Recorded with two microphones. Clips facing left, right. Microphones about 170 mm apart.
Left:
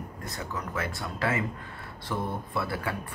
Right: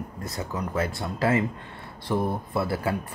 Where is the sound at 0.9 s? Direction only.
30° right (ahead or behind).